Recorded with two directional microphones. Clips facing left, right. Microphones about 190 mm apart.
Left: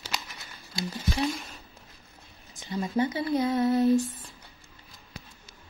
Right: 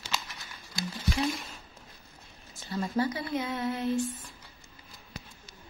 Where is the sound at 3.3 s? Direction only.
40° left (ahead or behind).